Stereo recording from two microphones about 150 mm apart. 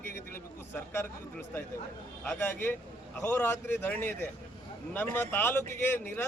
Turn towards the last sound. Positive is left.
turn(degrees=10)  # may be behind; listen again after turning